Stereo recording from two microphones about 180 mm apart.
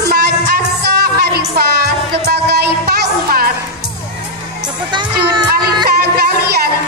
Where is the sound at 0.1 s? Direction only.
60° right (ahead or behind).